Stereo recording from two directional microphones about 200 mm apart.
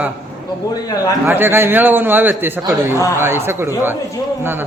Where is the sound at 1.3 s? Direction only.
10° right (ahead or behind).